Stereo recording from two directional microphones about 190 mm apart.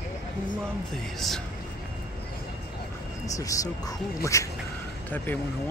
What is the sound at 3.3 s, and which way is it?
Speech, 15° left (ahead or behind).